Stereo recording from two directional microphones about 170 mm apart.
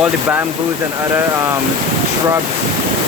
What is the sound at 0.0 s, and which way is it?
Speech, 10° right (ahead or behind).